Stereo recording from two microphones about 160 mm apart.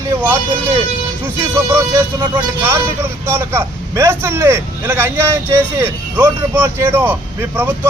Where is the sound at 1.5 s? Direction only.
20° right (ahead or behind).